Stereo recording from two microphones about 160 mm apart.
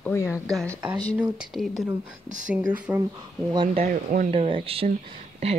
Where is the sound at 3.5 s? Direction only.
30° right (ahead or behind).